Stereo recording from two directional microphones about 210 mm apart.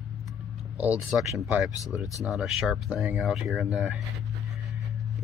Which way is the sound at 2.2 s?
5° right (ahead or behind).